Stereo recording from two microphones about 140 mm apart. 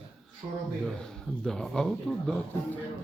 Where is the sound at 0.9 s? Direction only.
5° left (ahead or behind).